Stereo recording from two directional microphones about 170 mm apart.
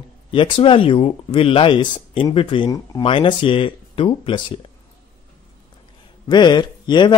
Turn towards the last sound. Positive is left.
turn(degrees=25)  # may be behind; listen again after turning